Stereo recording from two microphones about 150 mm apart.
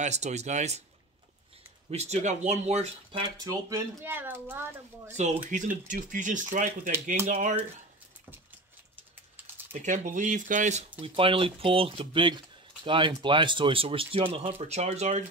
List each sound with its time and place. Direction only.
0.0 s speech: 50° right (ahead or behind)
1.9 s speech: 45° right (ahead or behind)
3.4 s speech: 20° right (ahead or behind)
5.1 s speech: 55° right (ahead or behind)
9.8 s speech: 55° right (ahead or behind)